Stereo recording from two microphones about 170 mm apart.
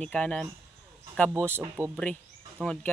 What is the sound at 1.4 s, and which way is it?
Speech, 15° right (ahead or behind).